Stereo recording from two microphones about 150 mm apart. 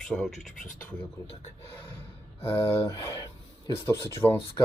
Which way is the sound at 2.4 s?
15° left (ahead or behind).